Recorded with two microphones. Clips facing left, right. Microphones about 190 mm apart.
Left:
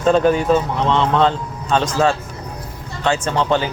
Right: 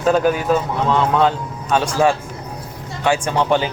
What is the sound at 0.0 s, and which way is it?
Speech, 5° right (ahead or behind).